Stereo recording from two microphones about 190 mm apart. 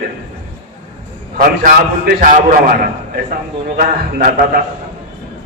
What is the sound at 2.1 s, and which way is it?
Speech, 45° right (ahead or behind).